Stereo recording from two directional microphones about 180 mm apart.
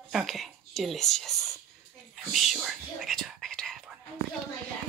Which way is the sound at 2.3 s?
Centre (ahead or behind).